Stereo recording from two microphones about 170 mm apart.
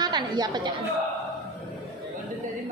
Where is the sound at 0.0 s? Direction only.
25° right (ahead or behind).